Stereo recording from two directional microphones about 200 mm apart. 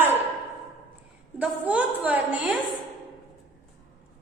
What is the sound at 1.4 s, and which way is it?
A woman's voice, 5° right (ahead or behind).